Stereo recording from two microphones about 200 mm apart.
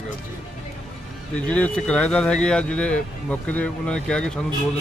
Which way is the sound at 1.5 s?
5° left (ahead or behind).